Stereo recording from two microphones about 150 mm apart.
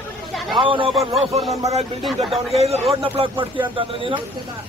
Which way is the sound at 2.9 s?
40° right (ahead or behind).